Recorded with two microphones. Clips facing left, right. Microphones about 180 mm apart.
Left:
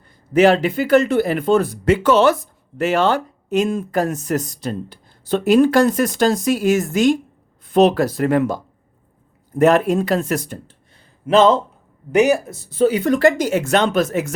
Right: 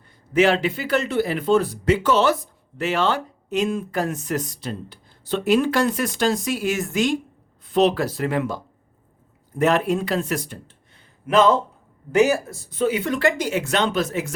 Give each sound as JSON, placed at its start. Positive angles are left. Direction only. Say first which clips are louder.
{"t": 0.3, "sound": "speech", "louder": "left 5 dB", "side_deg": 40}
{"t": 2.7, "sound": "speech", "louder": "left 5 dB", "side_deg": 45}
{"t": 11.3, "sound": "speech", "louder": "left 4 dB", "side_deg": 25}
{"t": 12.8, "sound": "speech", "louder": "left 6 dB", "side_deg": 40}